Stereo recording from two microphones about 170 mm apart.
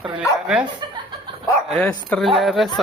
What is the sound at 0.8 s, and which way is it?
Chuckle, 25° right (ahead or behind).